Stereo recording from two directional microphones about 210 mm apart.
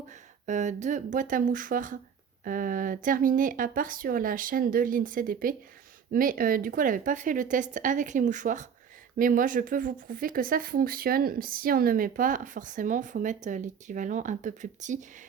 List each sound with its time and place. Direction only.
0.4 s speech: 35° right (ahead or behind)